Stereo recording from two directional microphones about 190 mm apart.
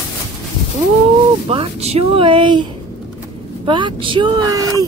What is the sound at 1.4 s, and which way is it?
Speech, 30° right (ahead or behind).